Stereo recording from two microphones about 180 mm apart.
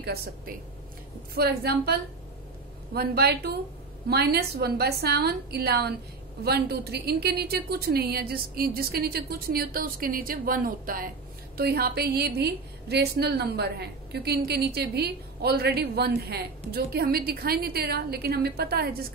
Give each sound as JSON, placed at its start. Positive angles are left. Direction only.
{"t": 0.0, "sound": "a woman's voice", "side_deg": -60}